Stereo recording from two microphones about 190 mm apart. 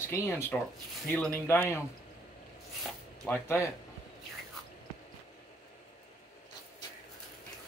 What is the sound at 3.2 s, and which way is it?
Speech, 15° left (ahead or behind).